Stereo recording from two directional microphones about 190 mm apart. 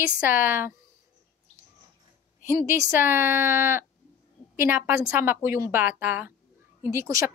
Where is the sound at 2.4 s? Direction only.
15° right (ahead or behind).